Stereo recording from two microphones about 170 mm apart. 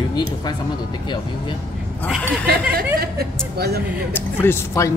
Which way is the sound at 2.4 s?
65° right (ahead or behind).